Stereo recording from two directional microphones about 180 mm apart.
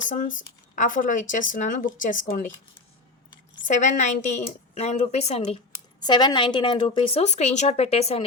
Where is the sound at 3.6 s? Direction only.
45° left (ahead or behind).